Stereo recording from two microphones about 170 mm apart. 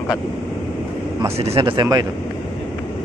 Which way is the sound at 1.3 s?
35° right (ahead or behind).